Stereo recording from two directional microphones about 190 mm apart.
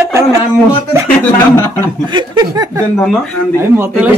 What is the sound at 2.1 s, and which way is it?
Speech, 20° right (ahead or behind).